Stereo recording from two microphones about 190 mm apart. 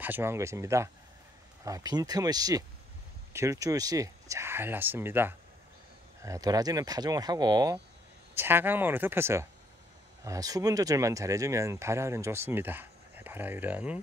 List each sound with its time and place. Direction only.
0.0 s speech: 10° right (ahead or behind)